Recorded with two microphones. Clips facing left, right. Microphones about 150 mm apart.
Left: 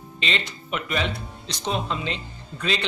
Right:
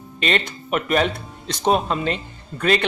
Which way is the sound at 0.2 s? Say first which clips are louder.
Right 6 dB; 55° right (ahead or behind).